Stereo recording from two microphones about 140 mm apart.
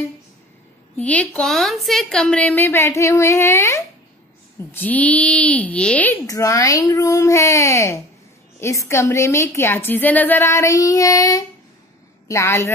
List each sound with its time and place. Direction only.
0.9 s a woman's voice: 10° left (ahead or behind)
6.2 s a woman's voice: 25° left (ahead or behind)